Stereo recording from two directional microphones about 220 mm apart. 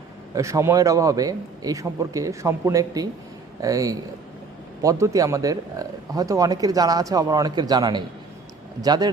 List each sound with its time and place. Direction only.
0.3 s speech: 15° right (ahead or behind)